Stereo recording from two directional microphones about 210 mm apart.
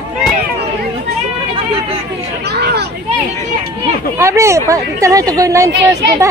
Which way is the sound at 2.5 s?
50° right (ahead or behind).